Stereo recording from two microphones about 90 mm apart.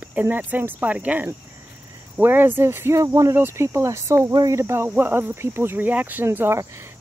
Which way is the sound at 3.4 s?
25° right (ahead or behind).